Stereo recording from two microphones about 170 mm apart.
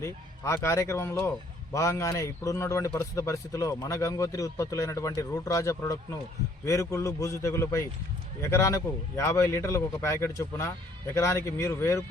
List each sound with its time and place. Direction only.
0.0 s a man's voice: 15° left (ahead or behind)